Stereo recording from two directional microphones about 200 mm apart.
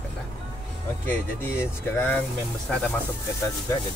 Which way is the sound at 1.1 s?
10° left (ahead or behind).